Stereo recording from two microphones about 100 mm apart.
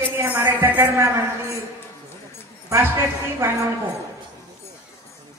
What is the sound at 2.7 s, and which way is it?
Speech, 25° right (ahead or behind).